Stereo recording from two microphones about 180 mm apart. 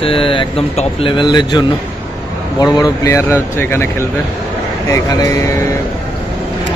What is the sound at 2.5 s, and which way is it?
Speech, 20° left (ahead or behind).